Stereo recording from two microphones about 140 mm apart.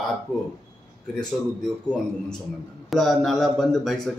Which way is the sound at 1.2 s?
5° left (ahead or behind).